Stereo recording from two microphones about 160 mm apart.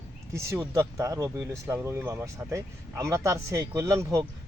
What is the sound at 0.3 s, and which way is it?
Speech, 20° right (ahead or behind).